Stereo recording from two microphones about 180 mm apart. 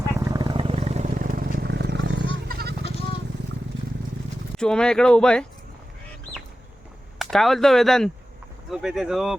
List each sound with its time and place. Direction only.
0.2 s wild animals: 20° right (ahead or behind); by 2.2 s 80° right
2.5 s goat: 60° right (ahead or behind)
4.5 s speech: 5° left (ahead or behind)
7.2 s speech: centre (ahead or behind)